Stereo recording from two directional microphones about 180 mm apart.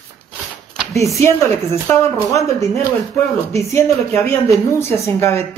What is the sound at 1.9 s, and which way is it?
Speech, 15° left (ahead or behind).